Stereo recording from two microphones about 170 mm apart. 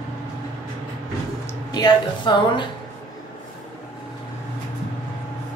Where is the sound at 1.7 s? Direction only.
25° left (ahead or behind).